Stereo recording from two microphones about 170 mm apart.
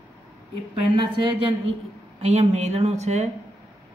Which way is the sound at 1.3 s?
35° right (ahead or behind).